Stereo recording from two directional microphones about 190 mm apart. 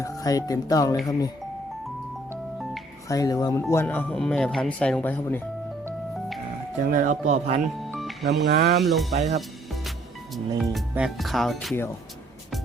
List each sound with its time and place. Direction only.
0.0 s speech: 20° left (ahead or behind)
3.1 s speech: 20° left (ahead or behind)
6.8 s speech: 45° right (ahead or behind)
7.9 s music: centre (ahead or behind)
8.3 s speech: 55° right (ahead or behind)
8.8 s speech: centre (ahead or behind)
9.1 s speech: 35° right (ahead or behind)
10.6 s speech: centre (ahead or behind)